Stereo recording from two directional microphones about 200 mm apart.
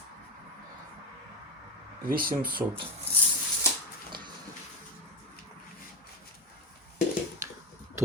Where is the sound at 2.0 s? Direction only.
45° right (ahead or behind).